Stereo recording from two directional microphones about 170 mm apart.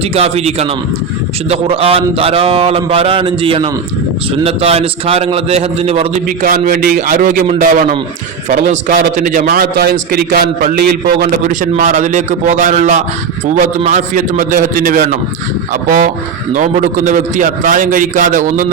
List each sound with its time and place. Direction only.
0.0 s speech: 35° right (ahead or behind)
6.4 s a man's voice: 55° right (ahead or behind)
11.8 s a man's voice: 45° right (ahead or behind)